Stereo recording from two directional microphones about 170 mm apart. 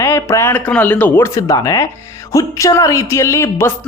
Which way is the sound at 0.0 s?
15° left (ahead or behind).